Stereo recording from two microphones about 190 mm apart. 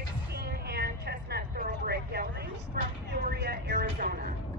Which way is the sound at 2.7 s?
55° right (ahead or behind).